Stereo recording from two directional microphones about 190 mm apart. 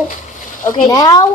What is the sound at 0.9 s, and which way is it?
Speech, 20° left (ahead or behind).